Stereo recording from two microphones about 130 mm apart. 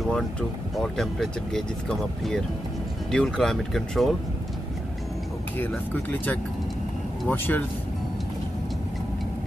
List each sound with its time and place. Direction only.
0.1 s speech: 5° left (ahead or behind)
7.2 s speech: 15° left (ahead or behind)